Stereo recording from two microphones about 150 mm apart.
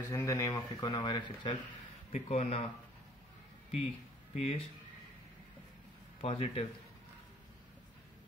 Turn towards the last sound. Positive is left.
turn(degrees=40)  # may be behind; listen again after turning